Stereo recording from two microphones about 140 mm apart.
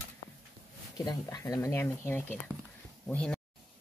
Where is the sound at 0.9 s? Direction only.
25° left (ahead or behind); by 3.3 s 5° left (ahead or behind).